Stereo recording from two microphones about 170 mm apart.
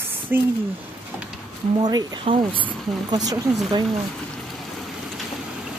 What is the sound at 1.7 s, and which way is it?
Speech, 25° right (ahead or behind).